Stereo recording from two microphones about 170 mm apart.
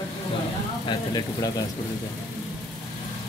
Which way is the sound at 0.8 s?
25° left (ahead or behind).